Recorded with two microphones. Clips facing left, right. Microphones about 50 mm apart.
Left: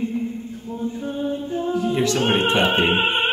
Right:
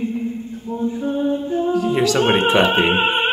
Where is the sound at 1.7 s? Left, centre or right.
Right.